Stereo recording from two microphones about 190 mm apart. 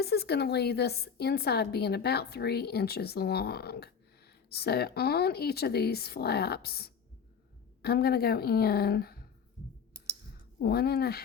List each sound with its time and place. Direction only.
0.0 s a woman's voice: 55° left (ahead or behind)
10.6 s a woman's voice: 55° left (ahead or behind)